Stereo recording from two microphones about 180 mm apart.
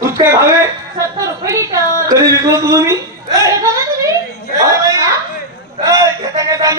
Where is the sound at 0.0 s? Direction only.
15° right (ahead or behind).